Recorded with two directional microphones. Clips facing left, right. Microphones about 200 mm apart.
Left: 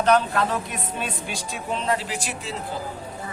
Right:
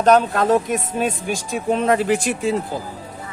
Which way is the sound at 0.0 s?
45° right (ahead or behind).